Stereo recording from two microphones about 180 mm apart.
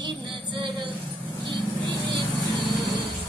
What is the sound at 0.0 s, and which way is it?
Vehicle, 25° right (ahead or behind).